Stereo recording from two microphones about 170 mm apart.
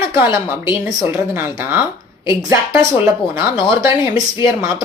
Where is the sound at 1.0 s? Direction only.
15° right (ahead or behind).